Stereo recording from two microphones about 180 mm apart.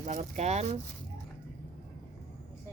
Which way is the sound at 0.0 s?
40° right (ahead or behind).